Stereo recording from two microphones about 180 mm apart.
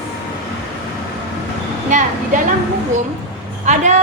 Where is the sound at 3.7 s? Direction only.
40° right (ahead or behind).